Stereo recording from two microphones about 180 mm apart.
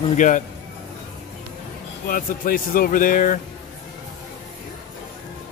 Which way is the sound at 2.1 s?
50° left (ahead or behind).